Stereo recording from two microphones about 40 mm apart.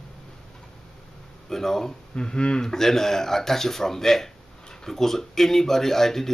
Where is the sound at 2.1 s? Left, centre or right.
Left.